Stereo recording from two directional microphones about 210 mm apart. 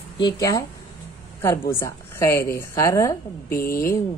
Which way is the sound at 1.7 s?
15° left (ahead or behind).